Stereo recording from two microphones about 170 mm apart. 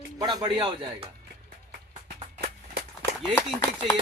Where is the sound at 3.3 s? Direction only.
15° left (ahead or behind).